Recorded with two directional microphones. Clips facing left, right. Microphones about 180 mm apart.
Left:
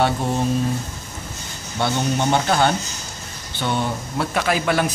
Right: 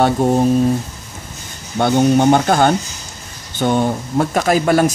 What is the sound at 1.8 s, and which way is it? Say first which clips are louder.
Speech: right 9 dB; 50° right (ahead or behind).